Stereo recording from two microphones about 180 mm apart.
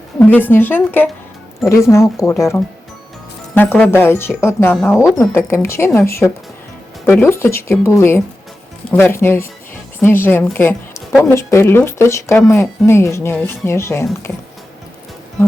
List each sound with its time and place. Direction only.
0.2 s speech: 10° left (ahead or behind)